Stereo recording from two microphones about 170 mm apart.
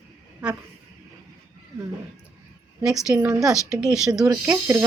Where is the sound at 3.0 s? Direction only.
20° right (ahead or behind).